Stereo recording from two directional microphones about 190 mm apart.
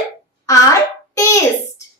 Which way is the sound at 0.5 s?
15° left (ahead or behind).